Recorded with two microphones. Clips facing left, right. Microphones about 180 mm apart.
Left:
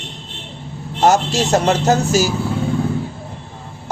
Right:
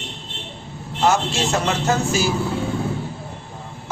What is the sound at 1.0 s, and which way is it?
A man's voice, 40° left (ahead or behind).